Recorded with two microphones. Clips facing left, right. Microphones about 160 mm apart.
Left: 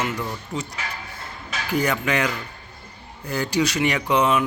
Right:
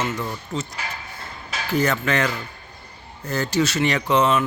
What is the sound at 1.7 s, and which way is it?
Speech, 15° left (ahead or behind).